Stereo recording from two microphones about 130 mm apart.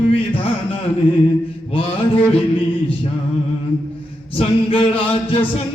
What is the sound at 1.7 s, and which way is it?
Chant, 45° left (ahead or behind).